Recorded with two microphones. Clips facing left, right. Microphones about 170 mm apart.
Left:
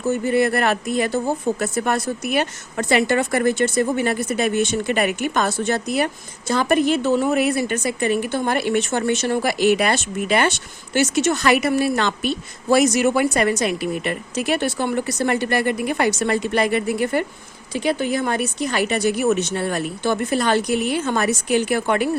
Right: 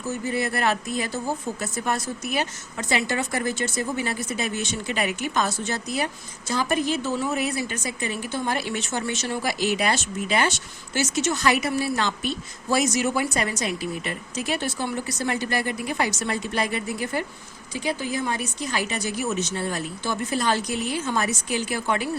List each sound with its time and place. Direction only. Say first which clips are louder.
0.1 s a woman's voice: left 8 dB; 60° left (ahead or behind)